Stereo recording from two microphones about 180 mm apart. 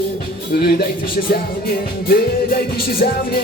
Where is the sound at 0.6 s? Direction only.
60° left (ahead or behind).